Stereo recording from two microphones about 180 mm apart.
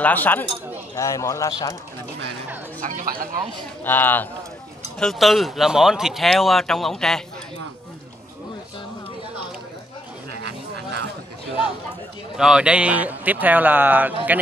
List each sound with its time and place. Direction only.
0.0 s speech: 10° left (ahead or behind)
2.8 s speech: 45° right (ahead or behind)
3.8 s speech: 10° left (ahead or behind)
12.4 s speech: 5° right (ahead or behind)